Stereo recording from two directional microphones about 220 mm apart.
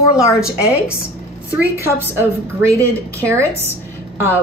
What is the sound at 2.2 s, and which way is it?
A woman's voice, 15° right (ahead or behind).